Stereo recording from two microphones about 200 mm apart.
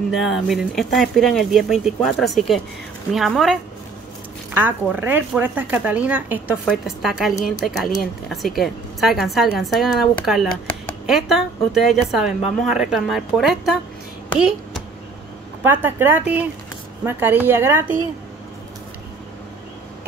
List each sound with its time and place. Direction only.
0.2 s a woman's voice: centre (ahead or behind)
4.6 s a woman's voice: 10° right (ahead or behind)
15.6 s speech: 10° right (ahead or behind)